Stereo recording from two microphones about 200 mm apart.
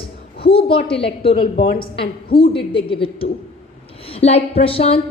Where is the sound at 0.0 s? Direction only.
25° left (ahead or behind).